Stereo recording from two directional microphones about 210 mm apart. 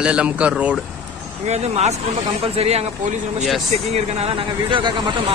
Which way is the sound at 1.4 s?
30° right (ahead or behind).